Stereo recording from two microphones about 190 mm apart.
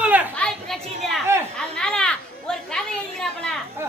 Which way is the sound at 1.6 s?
5° left (ahead or behind).